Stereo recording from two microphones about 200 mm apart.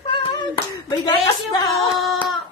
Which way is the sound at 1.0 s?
20° left (ahead or behind).